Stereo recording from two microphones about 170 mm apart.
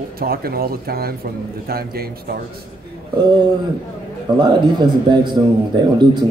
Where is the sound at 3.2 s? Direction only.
25° right (ahead or behind).